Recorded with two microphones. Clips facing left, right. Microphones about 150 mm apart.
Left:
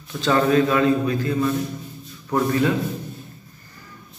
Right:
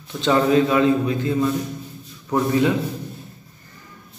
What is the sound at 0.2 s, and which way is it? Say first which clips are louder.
A man's voice: right 1 dB; 20° right (ahead or behind).